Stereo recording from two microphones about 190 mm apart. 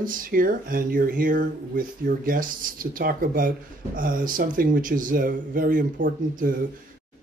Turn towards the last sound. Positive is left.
turn(degrees=-45)  # may be behind; listen again after turning